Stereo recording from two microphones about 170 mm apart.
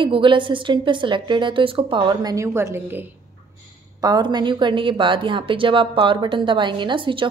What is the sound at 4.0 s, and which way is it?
A woman's voice, 25° right (ahead or behind).